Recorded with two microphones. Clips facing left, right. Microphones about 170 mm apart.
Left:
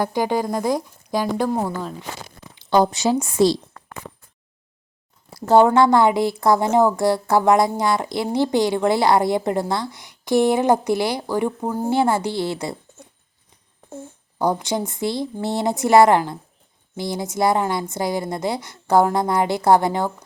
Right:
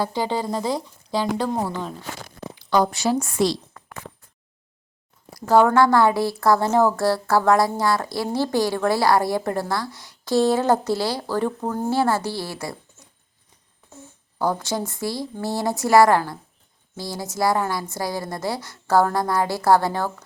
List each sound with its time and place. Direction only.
0.0 s speech: 15° left (ahead or behind)
2.6 s a woman's voice: 25° left (ahead or behind)
5.3 s a woman's voice: 25° left (ahead or behind)
14.3 s a woman's voice: 20° left (ahead or behind)